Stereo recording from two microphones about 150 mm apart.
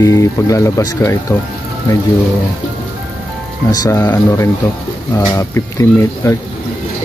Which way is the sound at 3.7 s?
25° left (ahead or behind).